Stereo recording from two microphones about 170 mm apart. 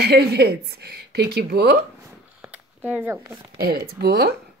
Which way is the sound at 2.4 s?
10° right (ahead or behind).